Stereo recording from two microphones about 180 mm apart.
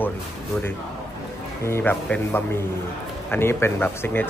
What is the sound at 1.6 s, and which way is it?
A man's voice, 15° left (ahead or behind).